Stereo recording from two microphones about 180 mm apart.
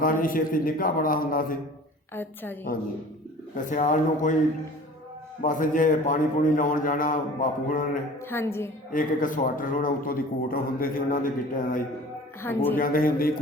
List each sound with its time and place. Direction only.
0.0 s a man's voice: 50° left (ahead or behind)
2.1 s a woman's voice: 10° left (ahead or behind)
3.6 s a man's voice: 45° left (ahead or behind)
5.4 s a man's voice: 45° left (ahead or behind)
8.3 s a woman's voice: 15° left (ahead or behind)
8.9 s a man's voice: 50° left (ahead or behind)